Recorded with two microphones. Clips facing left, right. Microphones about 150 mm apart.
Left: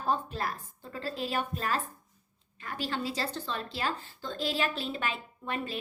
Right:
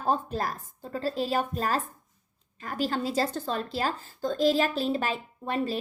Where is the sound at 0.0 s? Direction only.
40° right (ahead or behind).